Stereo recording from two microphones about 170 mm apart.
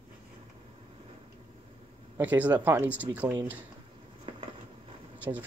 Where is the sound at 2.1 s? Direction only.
10° right (ahead or behind).